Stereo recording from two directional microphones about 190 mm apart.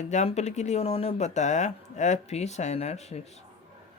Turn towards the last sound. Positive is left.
turn(degrees=35)  # may be behind; listen again after turning